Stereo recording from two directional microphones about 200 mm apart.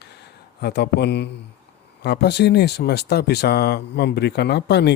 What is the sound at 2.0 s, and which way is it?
Speech, 55° left (ahead or behind).